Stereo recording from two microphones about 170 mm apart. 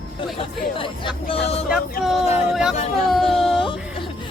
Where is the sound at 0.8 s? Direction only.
30° left (ahead or behind).